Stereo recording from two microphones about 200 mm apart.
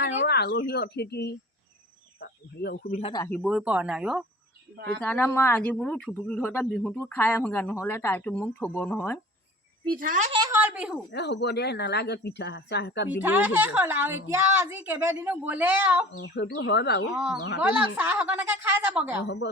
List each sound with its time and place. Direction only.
0.2 s speech: 55° left (ahead or behind)
3.4 s speech: 5° right (ahead or behind); by 9.2 s 10° left (ahead or behind)
9.8 s speech: 45° right (ahead or behind)
10.5 s a woman's voice: 10° right (ahead or behind)
11.1 s speech: 60° left (ahead or behind)
13.1 s a woman's voice: 10° right (ahead or behind)
16.2 s speech: 60° left (ahead or behind)
17.6 s a woman's voice: 10° right (ahead or behind)
19.2 s speech: 60° left (ahead or behind)